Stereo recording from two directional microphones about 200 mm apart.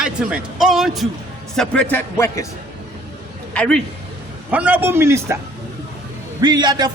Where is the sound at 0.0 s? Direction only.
5° right (ahead or behind); by 2.5 s 15° left (ahead or behind).